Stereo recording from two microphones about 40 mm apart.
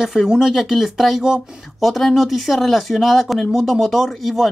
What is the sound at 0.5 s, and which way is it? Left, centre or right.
Speech, centre.